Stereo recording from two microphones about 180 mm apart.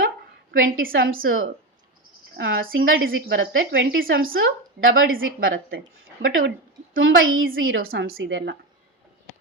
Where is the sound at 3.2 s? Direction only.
70° right (ahead or behind); by 4.0 s 90° right.